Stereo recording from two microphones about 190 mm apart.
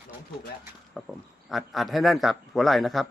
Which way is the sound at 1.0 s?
5° right (ahead or behind).